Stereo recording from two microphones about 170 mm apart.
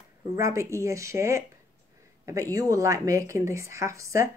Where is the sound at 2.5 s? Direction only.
20° right (ahead or behind).